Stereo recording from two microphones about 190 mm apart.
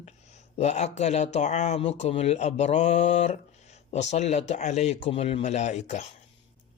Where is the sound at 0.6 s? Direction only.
35° left (ahead or behind).